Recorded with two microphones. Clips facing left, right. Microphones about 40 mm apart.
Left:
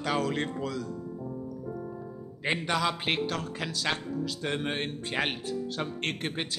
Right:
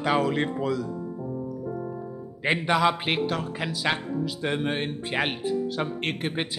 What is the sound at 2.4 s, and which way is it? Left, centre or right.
Speech, centre.